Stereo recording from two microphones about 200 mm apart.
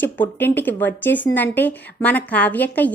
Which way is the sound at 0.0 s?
10° left (ahead or behind).